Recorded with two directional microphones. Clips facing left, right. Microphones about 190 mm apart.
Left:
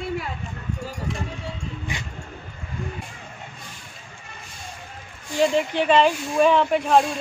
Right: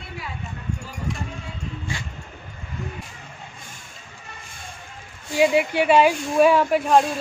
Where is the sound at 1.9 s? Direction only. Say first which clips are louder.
Right 1 dB; 20° left (ahead or behind).